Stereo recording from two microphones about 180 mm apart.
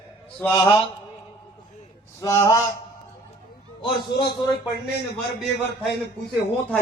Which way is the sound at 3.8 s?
25° left (ahead or behind).